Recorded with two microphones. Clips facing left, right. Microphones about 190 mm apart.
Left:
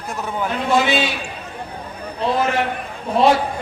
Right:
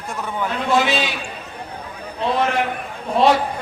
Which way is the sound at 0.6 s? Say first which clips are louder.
Left 1 dB; centre (ahead or behind).